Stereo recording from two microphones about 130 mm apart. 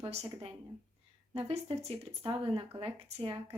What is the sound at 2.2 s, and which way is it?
Speech, 40° right (ahead or behind).